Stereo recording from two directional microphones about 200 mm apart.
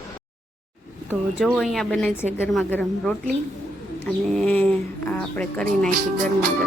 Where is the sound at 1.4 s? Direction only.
Centre (ahead or behind).